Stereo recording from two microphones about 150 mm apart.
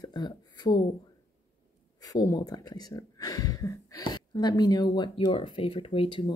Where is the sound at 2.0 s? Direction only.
25° left (ahead or behind).